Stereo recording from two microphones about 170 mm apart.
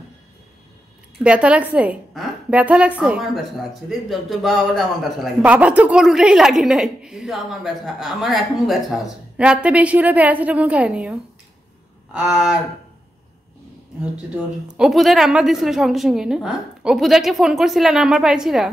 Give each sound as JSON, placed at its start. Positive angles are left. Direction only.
{"t": 1.2, "sound": "a woman's voice", "side_deg": -5}
{"t": 14.3, "sound": "a man's voice", "side_deg": -5}